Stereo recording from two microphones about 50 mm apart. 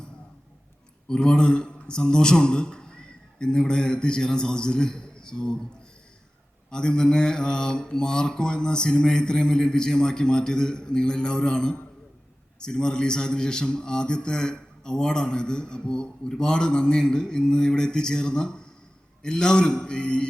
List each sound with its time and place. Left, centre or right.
1.0 s a man's voice: centre
6.7 s mantra: centre